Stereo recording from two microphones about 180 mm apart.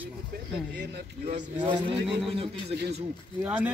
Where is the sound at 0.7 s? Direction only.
60° right (ahead or behind).